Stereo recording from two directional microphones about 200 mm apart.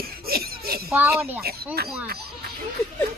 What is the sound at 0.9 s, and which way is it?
Speech, 10° right (ahead or behind).